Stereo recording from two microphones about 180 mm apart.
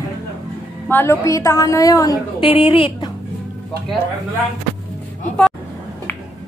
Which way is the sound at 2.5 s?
30° left (ahead or behind).